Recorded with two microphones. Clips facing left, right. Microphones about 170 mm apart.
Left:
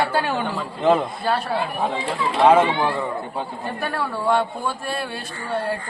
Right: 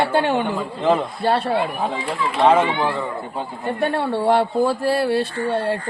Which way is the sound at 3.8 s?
25° right (ahead or behind).